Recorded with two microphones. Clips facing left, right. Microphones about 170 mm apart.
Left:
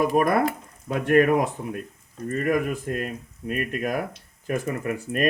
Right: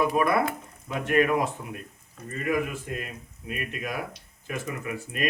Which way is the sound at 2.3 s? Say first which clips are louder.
Left 4 dB; 50° left (ahead or behind).